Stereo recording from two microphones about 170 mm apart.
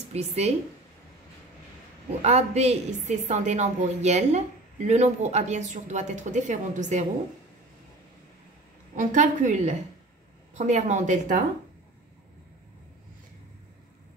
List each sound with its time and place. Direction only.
0.1 s a man's voice: 40° right (ahead or behind)
2.2 s a man's voice: 40° right (ahead or behind)
8.9 s speech: 50° right (ahead or behind)